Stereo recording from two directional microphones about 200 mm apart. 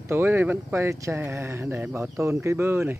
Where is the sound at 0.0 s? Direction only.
10° right (ahead or behind).